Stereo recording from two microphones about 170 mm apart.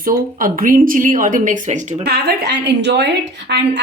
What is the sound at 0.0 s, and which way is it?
Speech, 55° right (ahead or behind).